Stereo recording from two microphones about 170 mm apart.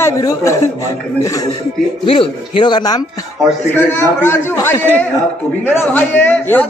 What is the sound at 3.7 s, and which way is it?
A man's voice, 10° left (ahead or behind).